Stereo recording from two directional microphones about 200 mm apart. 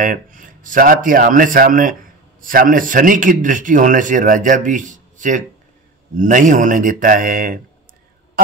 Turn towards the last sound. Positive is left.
turn(degrees=-45)  # may be behind; listen again after turning